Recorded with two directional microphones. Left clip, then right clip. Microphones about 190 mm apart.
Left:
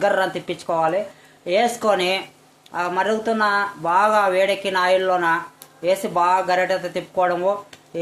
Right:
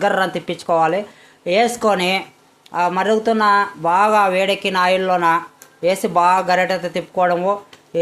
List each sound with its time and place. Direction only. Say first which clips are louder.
0.0 s speech: right 2 dB; 25° right (ahead or behind)